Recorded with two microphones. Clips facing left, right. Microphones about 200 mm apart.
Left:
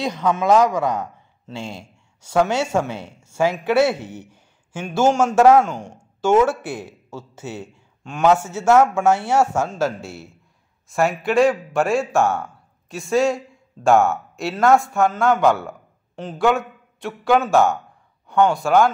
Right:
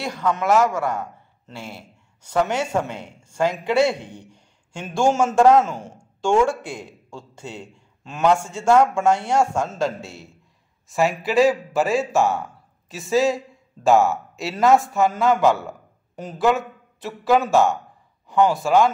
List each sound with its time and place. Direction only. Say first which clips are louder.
0.0 s a man's voice: left 3 dB; 15° left (ahead or behind); by 18.9 s centre (ahead or behind)